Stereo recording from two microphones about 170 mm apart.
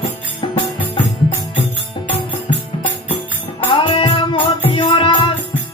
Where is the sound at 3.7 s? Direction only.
30° left (ahead or behind).